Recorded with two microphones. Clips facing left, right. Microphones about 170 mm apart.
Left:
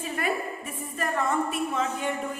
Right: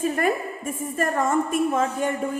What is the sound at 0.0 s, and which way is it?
A woman's voice, 45° right (ahead or behind).